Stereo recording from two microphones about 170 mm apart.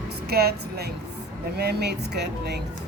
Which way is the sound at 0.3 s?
70° right (ahead or behind).